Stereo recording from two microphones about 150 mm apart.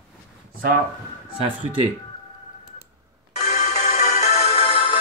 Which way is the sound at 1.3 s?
35° right (ahead or behind).